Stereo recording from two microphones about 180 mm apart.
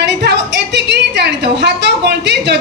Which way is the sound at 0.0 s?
70° right (ahead or behind).